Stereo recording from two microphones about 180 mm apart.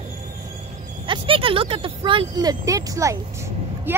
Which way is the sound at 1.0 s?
30° right (ahead or behind).